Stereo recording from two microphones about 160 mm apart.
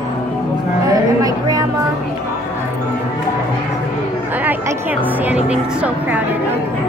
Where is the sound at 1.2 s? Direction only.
20° right (ahead or behind).